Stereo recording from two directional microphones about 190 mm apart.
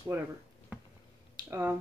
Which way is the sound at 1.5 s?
10° right (ahead or behind).